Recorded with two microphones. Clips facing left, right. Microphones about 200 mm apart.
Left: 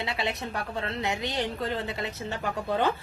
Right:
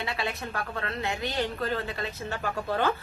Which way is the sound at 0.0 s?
25° left (ahead or behind).